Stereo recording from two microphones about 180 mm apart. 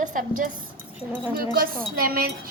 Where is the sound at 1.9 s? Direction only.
55° right (ahead or behind).